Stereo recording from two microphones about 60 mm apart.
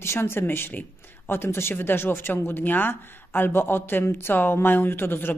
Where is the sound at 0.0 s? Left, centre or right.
Left.